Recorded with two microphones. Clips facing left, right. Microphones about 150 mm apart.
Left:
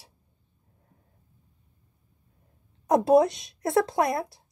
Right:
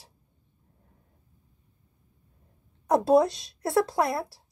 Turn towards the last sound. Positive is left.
turn(degrees=20)  # may be behind; listen again after turning